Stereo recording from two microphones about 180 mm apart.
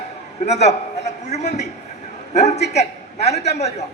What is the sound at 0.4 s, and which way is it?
A man's voice, 35° left (ahead or behind).